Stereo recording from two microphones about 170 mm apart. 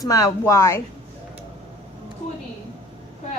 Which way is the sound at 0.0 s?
20° left (ahead or behind).